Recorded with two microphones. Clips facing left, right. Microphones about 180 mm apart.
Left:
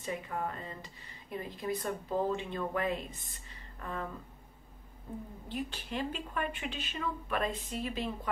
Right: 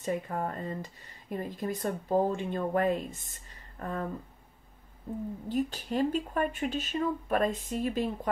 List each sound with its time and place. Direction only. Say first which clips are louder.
0.0 s speech: right 5 dB; 45° right (ahead or behind)
5.5 s speech: right 7 dB; 40° right (ahead or behind)